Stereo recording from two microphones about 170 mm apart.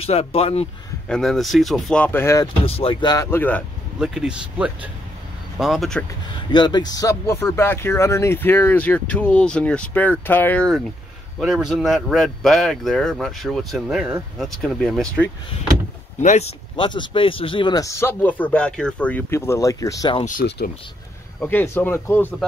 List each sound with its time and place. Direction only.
0.0 s speech: 35° left (ahead or behind)
1.0 s speech: 5° left (ahead or behind)
2.6 s speech: 35° left (ahead or behind)
3.3 s speech: 10° left (ahead or behind)
4.0 s speech: 5° right (ahead or behind)
6.5 s speech: 25° left (ahead or behind); by 15.2 s 5° left (ahead or behind)
16.2 s speech: 40° left (ahead or behind); by 20.2 s 20° left (ahead or behind)
20.4 s speech: 75° left (ahead or behind)
21.4 s speech: 10° left (ahead or behind)